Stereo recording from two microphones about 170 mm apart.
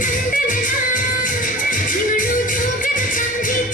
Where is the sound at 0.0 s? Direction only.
50° left (ahead or behind).